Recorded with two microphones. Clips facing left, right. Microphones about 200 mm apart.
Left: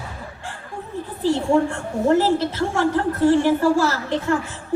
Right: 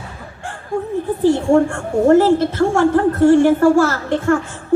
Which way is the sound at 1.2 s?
50° right (ahead or behind).